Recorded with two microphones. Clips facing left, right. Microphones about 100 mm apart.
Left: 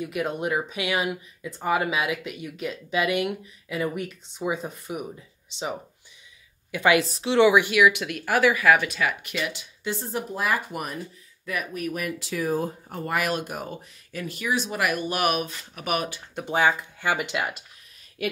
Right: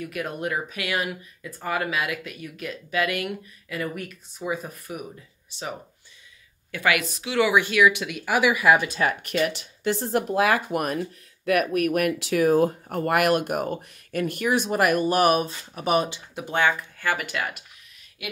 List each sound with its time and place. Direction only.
0.0 s speech: 20° left (ahead or behind)
7.1 s a woman's voice: 30° left (ahead or behind)
7.4 s speech: 15° left (ahead or behind); by 8.6 s 10° right (ahead or behind)
8.6 s speech: 25° right (ahead or behind)
9.0 s speech: 50° right (ahead or behind)
9.8 s speech: 65° right (ahead or behind); by 16.2 s 30° right (ahead or behind)
16.3 s speech: centre (ahead or behind)
16.6 s speech: 20° left (ahead or behind)